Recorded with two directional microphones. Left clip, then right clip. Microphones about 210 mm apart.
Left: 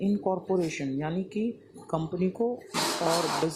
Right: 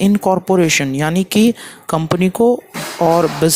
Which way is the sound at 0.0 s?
60° right (ahead or behind).